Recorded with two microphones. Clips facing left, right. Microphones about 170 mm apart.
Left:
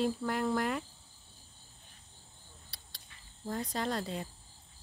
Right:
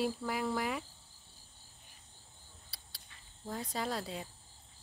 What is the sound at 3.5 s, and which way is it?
Speech, 5° right (ahead or behind).